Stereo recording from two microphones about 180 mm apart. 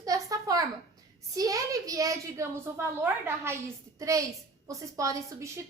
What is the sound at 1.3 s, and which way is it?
A woman's voice, 20° right (ahead or behind).